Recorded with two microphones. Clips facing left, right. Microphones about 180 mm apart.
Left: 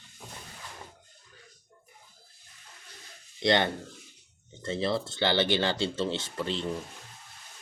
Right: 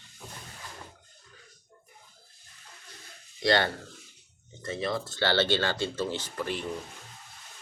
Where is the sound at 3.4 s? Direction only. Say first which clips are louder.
Even; 20° left (ahead or behind).